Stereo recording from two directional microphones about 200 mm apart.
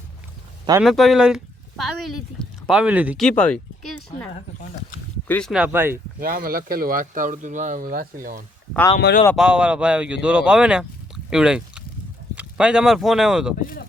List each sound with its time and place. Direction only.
0.8 s speech: centre (ahead or behind)
3.2 s speech: 5° left (ahead or behind)
5.3 s speech: centre (ahead or behind)
6.1 s speech: 45° right (ahead or behind)
9.0 s speech: 55° left (ahead or behind)
9.3 s speech: 5° right (ahead or behind)